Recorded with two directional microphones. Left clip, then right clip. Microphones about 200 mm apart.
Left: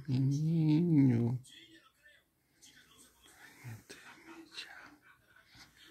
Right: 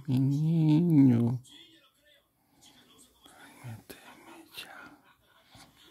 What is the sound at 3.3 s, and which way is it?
Whispering, 30° right (ahead or behind).